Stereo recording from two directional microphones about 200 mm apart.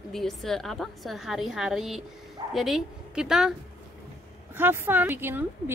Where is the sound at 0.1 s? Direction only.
Centre (ahead or behind).